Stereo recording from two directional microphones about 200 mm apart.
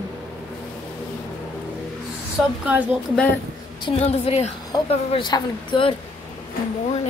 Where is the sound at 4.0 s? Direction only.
30° left (ahead or behind).